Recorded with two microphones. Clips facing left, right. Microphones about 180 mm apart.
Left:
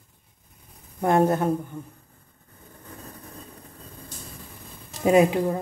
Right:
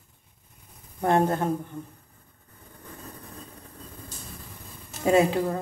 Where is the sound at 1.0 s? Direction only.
10° left (ahead or behind).